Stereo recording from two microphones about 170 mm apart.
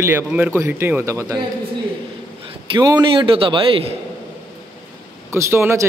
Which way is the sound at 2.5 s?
30° right (ahead or behind).